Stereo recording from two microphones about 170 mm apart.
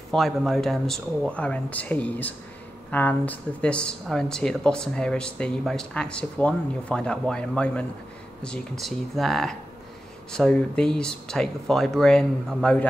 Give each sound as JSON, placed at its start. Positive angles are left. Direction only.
{"t": 0.1, "sound": "speech", "side_deg": 0}